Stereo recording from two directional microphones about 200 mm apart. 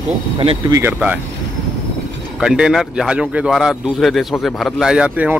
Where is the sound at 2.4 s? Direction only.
5° right (ahead or behind).